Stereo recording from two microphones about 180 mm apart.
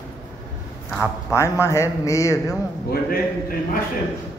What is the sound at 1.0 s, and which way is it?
Speech, 15° left (ahead or behind).